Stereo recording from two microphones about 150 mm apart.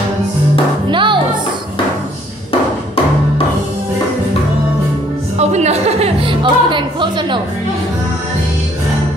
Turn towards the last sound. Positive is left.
turn(degrees=-30)  # may be behind; listen again after turning